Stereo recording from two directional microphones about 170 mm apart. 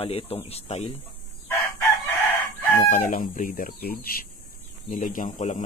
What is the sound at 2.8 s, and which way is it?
Speech, 50° left (ahead or behind).